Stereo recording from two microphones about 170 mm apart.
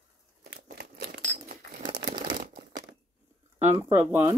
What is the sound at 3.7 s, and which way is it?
Speech, 15° right (ahead or behind).